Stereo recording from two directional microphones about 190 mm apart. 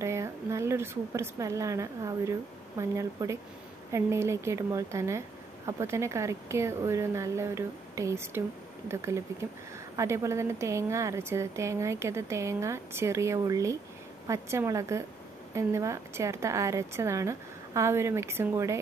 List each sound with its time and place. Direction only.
0.0 s a woman's voice: 15° right (ahead or behind)